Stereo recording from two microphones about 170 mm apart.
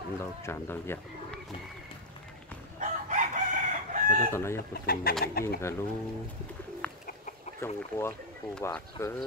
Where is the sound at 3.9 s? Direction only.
50° right (ahead or behind).